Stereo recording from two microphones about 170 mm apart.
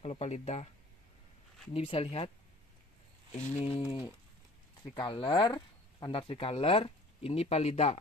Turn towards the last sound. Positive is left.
turn(degrees=40)  # may be behind; listen again after turning